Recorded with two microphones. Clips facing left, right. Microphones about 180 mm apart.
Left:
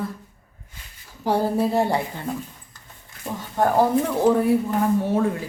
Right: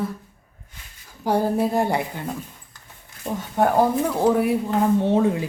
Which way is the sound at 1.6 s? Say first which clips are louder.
Even; 15° right (ahead or behind).